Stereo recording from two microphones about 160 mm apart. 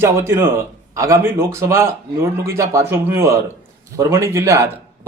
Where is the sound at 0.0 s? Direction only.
15° right (ahead or behind).